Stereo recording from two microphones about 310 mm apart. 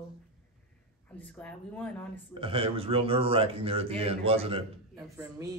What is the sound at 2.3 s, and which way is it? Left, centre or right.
Speech, centre.